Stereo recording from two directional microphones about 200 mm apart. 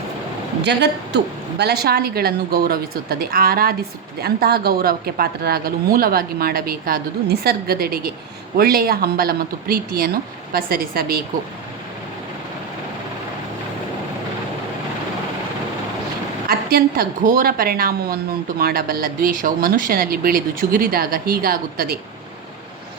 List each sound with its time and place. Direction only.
0.6 s speech: 60° right (ahead or behind)
16.5 s speech: 50° right (ahead or behind)